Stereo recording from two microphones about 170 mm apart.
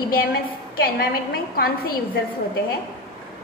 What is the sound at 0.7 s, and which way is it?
A woman's voice, 65° left (ahead or behind).